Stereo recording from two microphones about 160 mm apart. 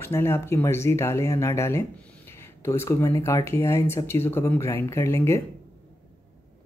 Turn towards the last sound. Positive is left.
turn(degrees=15)  # may be behind; listen again after turning